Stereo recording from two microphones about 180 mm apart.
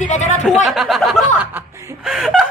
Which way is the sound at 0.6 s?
Centre (ahead or behind).